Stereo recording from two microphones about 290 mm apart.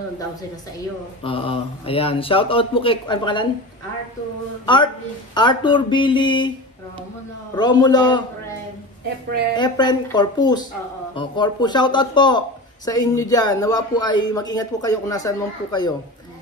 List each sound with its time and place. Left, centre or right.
1.2 s speech: centre
5.3 s speech: centre
7.5 s speech: centre
9.6 s speech: centre